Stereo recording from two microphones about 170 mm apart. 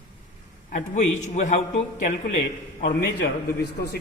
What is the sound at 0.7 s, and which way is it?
A man's voice, 45° left (ahead or behind).